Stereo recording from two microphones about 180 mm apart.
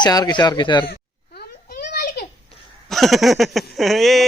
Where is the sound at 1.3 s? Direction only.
60° left (ahead or behind).